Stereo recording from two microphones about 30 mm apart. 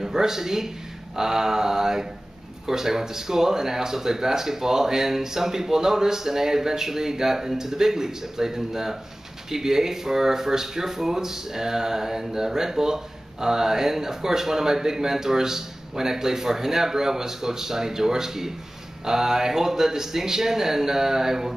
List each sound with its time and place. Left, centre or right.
0.0 s speech: centre